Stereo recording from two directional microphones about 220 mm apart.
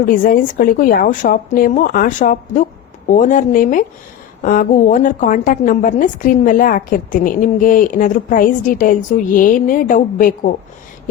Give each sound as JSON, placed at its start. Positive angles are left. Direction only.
{"t": 0.0, "sound": "a woman's voice", "side_deg": 40}